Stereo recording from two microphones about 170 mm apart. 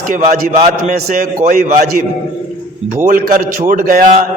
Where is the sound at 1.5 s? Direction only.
50° right (ahead or behind).